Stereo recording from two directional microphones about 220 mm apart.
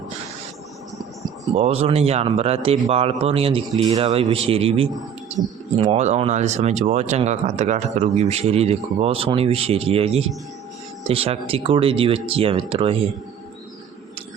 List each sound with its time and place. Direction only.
1.5 s speech: 30° right (ahead or behind)